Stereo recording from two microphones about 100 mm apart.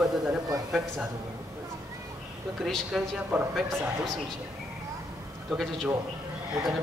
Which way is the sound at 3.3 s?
20° right (ahead or behind).